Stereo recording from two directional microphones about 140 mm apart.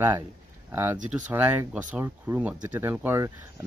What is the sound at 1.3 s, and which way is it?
Speech, 15° right (ahead or behind).